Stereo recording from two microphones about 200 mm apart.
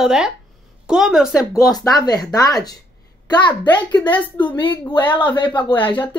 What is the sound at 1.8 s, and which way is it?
A child's voice, 20° left (ahead or behind).